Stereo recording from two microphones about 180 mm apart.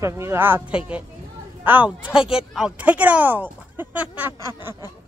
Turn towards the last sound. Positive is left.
turn(degrees=-10)  # may be behind; listen again after turning